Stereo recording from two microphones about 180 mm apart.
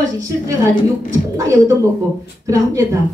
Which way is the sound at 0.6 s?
15° right (ahead or behind).